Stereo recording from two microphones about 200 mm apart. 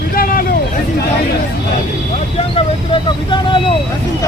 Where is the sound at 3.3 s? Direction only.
25° left (ahead or behind).